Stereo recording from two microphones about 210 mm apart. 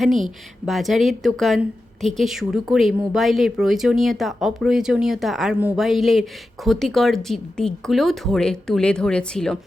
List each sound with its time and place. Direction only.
0.0 s speech: centre (ahead or behind)